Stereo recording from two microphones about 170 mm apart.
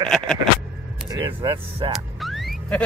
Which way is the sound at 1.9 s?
Centre (ahead or behind).